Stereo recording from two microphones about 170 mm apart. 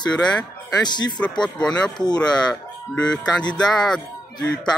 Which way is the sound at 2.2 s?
25° left (ahead or behind).